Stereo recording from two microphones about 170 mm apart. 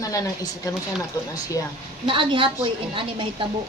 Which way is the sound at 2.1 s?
30° right (ahead or behind).